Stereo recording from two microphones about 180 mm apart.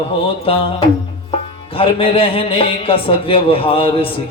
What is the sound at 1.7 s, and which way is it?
A man's voice, 30° left (ahead or behind).